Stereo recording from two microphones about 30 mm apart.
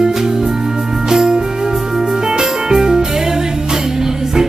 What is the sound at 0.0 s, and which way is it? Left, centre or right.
Music, centre.